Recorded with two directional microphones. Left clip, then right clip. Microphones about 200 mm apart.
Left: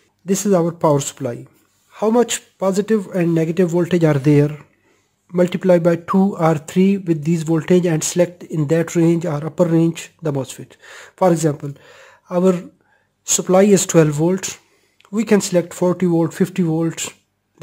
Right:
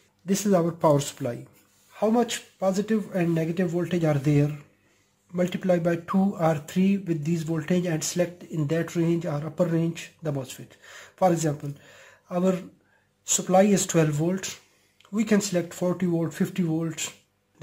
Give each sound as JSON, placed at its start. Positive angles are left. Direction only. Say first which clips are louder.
{"t": 0.2, "sound": "speech", "louder": "left 7 dB", "side_deg": 30}
{"t": 2.0, "sound": "speech", "louder": "left 8 dB", "side_deg": 45}